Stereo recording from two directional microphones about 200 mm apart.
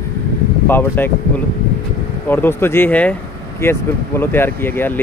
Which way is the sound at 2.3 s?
10° left (ahead or behind).